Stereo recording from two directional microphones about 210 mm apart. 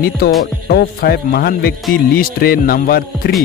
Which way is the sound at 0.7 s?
50° left (ahead or behind).